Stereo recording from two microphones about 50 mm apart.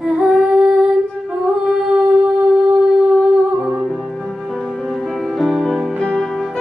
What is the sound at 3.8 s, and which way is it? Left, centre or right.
Music, centre.